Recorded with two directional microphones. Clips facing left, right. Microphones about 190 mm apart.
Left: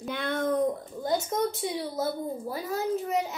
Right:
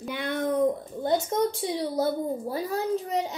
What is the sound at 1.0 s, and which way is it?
A woman's voice, 30° right (ahead or behind).